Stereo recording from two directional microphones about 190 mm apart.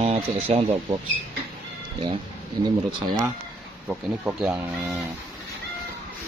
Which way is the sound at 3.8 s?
5° right (ahead or behind).